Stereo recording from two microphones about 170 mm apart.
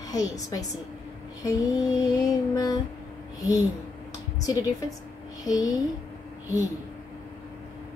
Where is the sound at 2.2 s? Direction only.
20° left (ahead or behind).